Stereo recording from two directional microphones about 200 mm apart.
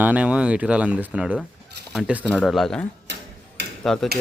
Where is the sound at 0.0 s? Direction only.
5° right (ahead or behind).